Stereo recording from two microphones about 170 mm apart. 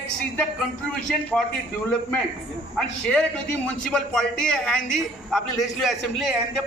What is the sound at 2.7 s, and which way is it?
A man's voice, 5° left (ahead or behind).